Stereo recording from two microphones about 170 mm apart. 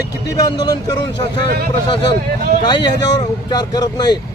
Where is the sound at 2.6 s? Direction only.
25° left (ahead or behind).